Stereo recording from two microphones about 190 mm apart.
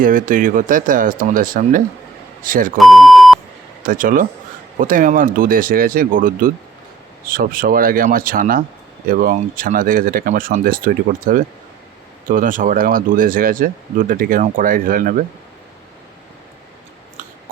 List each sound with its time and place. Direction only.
0.0 s speech: 45° right (ahead or behind)
2.7 s beep: centre (ahead or behind)
3.8 s speech: 45° right (ahead or behind)